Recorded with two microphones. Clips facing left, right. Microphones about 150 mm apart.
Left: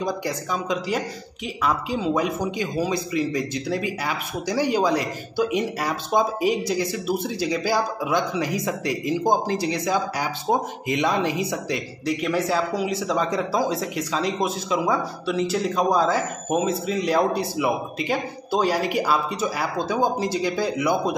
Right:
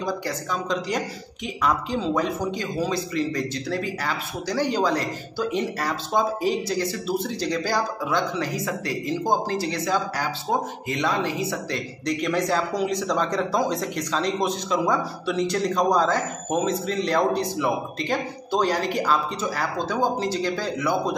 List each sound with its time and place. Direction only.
0.7 s a man's voice: 5° left (ahead or behind)
12.1 s speech: 5° left (ahead or behind)